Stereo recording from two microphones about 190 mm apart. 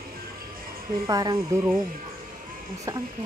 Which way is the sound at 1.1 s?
20° right (ahead or behind).